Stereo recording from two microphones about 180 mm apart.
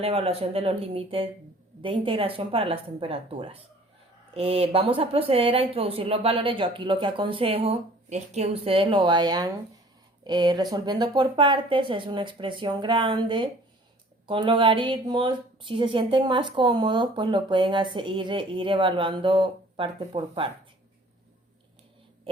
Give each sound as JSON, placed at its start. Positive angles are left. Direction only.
{"t": 0.0, "sound": "a woman's voice", "side_deg": -35}